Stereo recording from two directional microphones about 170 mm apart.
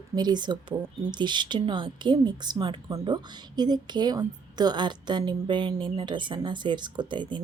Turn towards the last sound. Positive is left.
turn(degrees=-30)  # may be behind; listen again after turning